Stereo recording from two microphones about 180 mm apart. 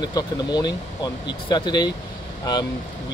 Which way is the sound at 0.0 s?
20° left (ahead or behind).